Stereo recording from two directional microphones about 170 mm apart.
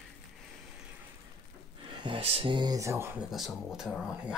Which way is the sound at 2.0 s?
30° right (ahead or behind).